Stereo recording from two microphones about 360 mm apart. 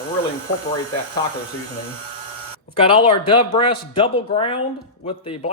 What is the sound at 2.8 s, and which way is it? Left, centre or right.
Speech, centre.